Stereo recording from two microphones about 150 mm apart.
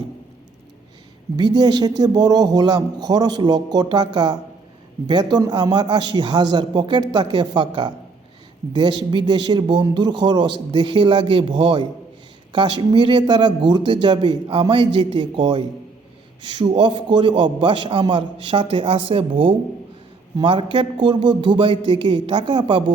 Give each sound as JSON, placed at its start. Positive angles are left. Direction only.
{"t": 1.4, "sound": "a man's voice", "side_deg": -30}